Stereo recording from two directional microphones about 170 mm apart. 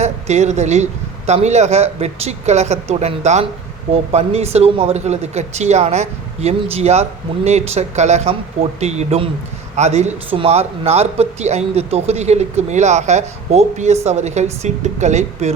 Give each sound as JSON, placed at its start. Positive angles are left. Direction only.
{"t": 0.0, "sound": "speech", "side_deg": -40}